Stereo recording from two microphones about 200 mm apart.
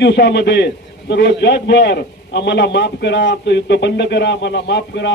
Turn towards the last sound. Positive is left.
turn(degrees=60)  # may be behind; listen again after turning